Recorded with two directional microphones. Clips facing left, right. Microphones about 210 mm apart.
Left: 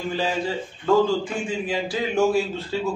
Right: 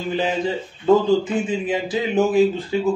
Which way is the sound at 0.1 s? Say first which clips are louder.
Right 5 dB; 20° right (ahead or behind).